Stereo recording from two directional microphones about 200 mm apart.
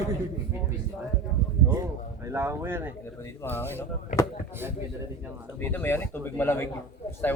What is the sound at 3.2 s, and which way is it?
Speech, 10° left (ahead or behind).